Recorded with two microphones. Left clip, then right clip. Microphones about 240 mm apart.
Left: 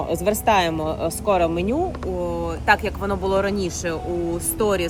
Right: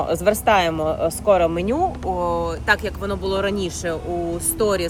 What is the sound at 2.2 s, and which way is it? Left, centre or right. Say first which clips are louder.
Speech: even; centre.